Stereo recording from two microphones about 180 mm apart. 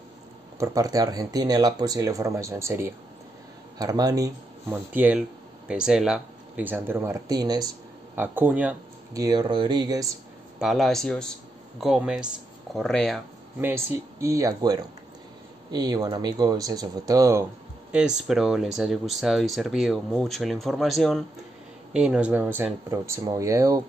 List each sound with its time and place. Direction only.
0.6 s speech: 20° right (ahead or behind)
8.2 s speech: 10° right (ahead or behind)
9.2 s speech: 20° right (ahead or behind)
10.6 s speech: centre (ahead or behind)
13.6 s speech: 15° right (ahead or behind)
17.9 s speech: 5° right (ahead or behind)